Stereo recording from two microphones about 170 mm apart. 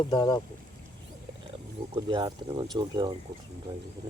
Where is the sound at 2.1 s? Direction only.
30° right (ahead or behind).